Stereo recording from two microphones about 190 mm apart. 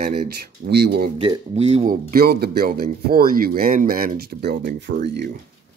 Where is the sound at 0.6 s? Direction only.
60° right (ahead or behind).